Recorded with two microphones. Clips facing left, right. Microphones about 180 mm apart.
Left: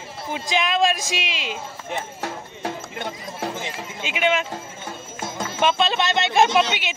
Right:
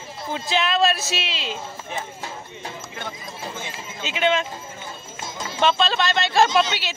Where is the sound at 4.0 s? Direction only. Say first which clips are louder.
Right 1 dB; 10° left (ahead or behind).